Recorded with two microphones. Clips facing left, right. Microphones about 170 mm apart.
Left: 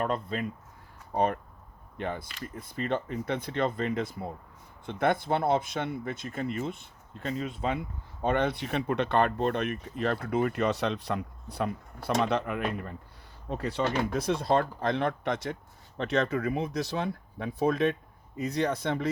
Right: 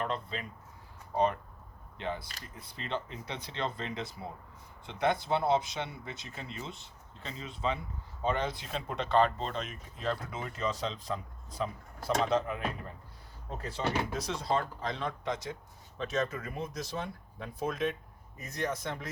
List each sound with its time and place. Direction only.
0.0 s speech: 50° left (ahead or behind); by 19.0 s 65° left (ahead or behind)